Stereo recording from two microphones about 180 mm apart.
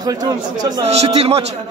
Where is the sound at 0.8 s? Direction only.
35° right (ahead or behind).